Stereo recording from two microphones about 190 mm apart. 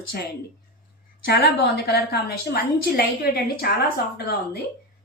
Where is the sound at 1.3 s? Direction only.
60° left (ahead or behind).